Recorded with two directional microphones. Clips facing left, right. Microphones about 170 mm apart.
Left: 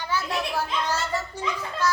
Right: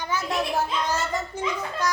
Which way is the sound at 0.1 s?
15° right (ahead or behind).